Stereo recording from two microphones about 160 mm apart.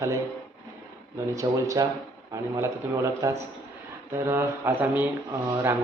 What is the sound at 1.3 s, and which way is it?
Speech, 20° right (ahead or behind).